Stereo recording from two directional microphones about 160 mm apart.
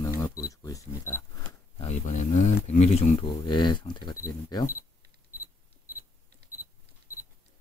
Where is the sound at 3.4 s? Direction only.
30° left (ahead or behind).